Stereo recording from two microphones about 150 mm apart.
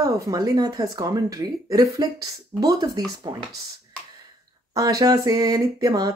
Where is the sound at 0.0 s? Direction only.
25° right (ahead or behind).